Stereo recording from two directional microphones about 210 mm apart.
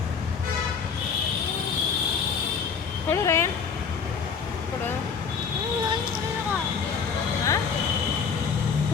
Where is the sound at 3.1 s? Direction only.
10° left (ahead or behind).